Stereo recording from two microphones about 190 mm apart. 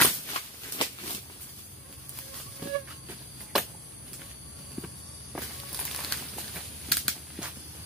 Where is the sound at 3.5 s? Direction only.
Centre (ahead or behind).